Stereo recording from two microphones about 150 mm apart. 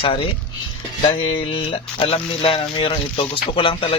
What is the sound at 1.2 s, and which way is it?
Speech, 35° left (ahead or behind).